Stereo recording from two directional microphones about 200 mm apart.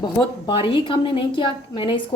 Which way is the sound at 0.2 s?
25° left (ahead or behind).